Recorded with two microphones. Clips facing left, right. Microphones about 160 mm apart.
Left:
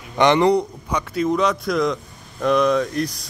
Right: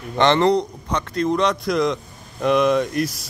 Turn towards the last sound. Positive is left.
turn(degrees=-5)  # may be behind; listen again after turning